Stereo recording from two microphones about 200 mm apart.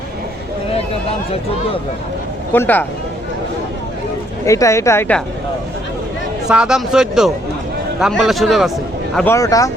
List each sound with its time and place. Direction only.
2.5 s a woman's voice: 10° left (ahead or behind)
4.4 s a woman's voice: 15° left (ahead or behind)
6.5 s speech: 5° right (ahead or behind)
9.1 s a woman's voice: 10° left (ahead or behind)